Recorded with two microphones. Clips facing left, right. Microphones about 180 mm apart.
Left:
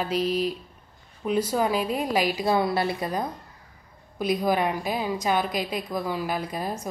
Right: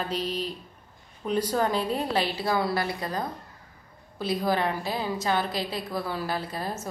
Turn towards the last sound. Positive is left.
turn(degrees=15)  # may be behind; listen again after turning